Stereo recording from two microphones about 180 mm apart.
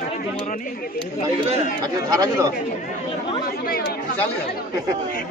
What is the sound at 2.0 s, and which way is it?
Speech, 20° right (ahead or behind).